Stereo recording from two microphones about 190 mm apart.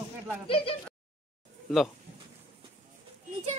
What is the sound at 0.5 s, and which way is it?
Speech, 30° left (ahead or behind).